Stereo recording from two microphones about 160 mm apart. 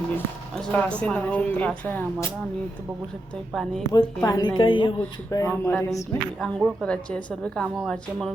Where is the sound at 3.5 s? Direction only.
5° left (ahead or behind).